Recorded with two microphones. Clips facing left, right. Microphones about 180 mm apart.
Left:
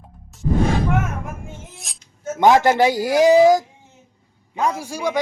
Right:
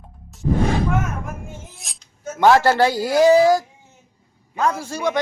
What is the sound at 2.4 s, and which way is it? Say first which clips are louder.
A man's voice: even; 15° left (ahead or behind).